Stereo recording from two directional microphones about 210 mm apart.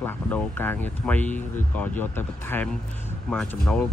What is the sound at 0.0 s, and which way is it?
Speech, 10° left (ahead or behind).